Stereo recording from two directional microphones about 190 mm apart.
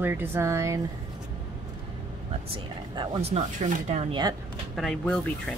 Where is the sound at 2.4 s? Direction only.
25° right (ahead or behind).